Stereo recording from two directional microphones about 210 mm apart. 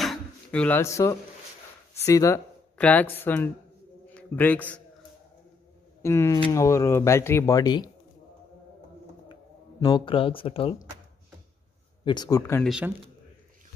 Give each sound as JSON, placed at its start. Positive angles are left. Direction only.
{"t": 0.0, "sound": "drawer open or close", "side_deg": 5}
{"t": 2.0, "sound": "a man's voice", "side_deg": 15}
{"t": 6.0, "sound": "speech", "side_deg": 15}
{"t": 9.3, "sound": "speech", "side_deg": 20}
{"t": 12.0, "sound": "speech", "side_deg": 20}
{"t": 12.6, "sound": "speech", "side_deg": -5}